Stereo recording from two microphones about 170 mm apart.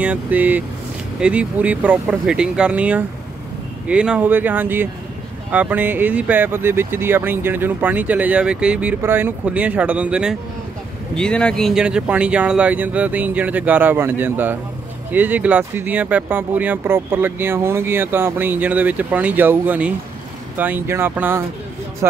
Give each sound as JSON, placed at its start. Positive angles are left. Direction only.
{"t": 0.0, "sound": "speech", "side_deg": -10}
{"t": 11.1, "sound": "speech", "side_deg": 5}